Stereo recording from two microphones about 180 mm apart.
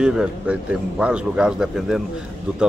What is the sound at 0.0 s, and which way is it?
Speech, 5° right (ahead or behind).